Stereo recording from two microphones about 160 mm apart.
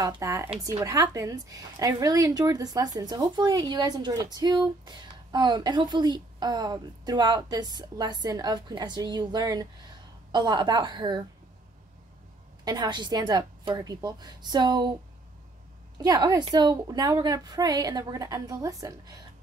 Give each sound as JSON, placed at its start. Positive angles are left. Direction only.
{"t": 0.0, "sound": "a woman's voice", "side_deg": -20}
{"t": 12.6, "sound": "a woman's voice", "side_deg": -25}
{"t": 16.0, "sound": "a woman's voice", "side_deg": -25}